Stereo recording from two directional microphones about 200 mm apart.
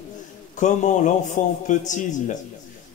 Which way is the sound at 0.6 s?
40° left (ahead or behind).